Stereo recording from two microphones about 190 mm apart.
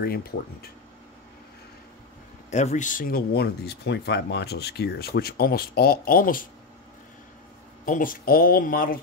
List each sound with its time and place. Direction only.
0.0 s speech: 55° left (ahead or behind)
2.5 s speech: 40° left (ahead or behind)
7.8 s speech: 45° left (ahead or behind)